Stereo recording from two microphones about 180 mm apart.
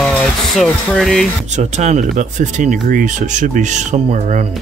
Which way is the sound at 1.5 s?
40° right (ahead or behind).